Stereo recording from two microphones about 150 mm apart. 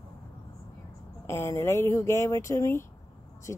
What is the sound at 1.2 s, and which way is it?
Speech, 15° left (ahead or behind).